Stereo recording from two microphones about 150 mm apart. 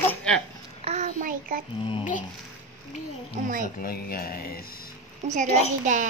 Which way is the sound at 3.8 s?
90° left.